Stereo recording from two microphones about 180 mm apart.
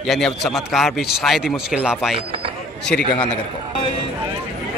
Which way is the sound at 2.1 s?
30° right (ahead or behind).